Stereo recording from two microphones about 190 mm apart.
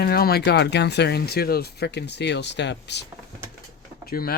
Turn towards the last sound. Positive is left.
turn(degrees=55)  # may be behind; listen again after turning